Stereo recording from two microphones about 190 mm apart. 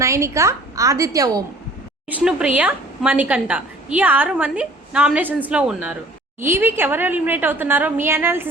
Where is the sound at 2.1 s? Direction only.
5° right (ahead or behind).